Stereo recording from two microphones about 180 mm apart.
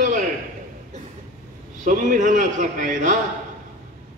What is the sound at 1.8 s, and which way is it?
A man's voice, 45° right (ahead or behind).